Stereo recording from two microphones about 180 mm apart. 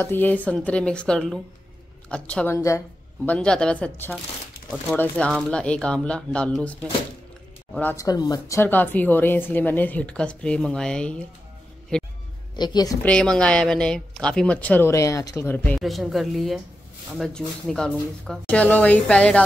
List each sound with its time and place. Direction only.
0.0 s a woman's voice: 10° left (ahead or behind)
3.3 s speech: 5° left (ahead or behind)
7.9 s a woman's voice: 20° left (ahead or behind)
11.9 s music: 5° left (ahead or behind)
12.5 s a woman's voice: 25° left (ahead or behind)
13.0 s speech: 5° left (ahead or behind)